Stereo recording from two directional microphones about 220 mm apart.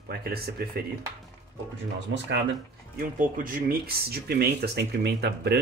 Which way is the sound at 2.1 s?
50° right (ahead or behind).